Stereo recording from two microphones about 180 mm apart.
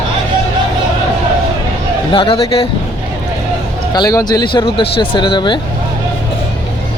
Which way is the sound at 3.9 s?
20° left (ahead or behind).